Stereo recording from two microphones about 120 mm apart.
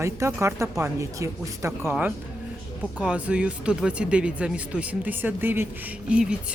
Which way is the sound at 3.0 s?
10° right (ahead or behind).